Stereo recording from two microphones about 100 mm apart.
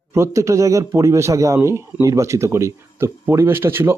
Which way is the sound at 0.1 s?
30° right (ahead or behind).